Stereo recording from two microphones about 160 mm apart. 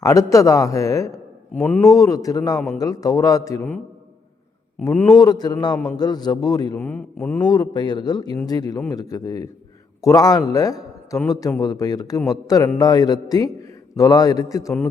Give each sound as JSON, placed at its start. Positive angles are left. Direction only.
{"t": 0.0, "sound": "a man's voice", "side_deg": 20}
{"t": 1.9, "sound": "a man's voice", "side_deg": 20}
{"t": 4.8, "sound": "a man's voice", "side_deg": 15}
{"t": 5.1, "sound": "a man's voice", "side_deg": 25}
{"t": 5.7, "sound": "a man's voice", "side_deg": 5}
{"t": 6.0, "sound": "a man's voice", "side_deg": 25}
{"t": 6.7, "sound": "a man's voice", "side_deg": 10}
{"t": 7.4, "sound": "a man's voice", "side_deg": 25}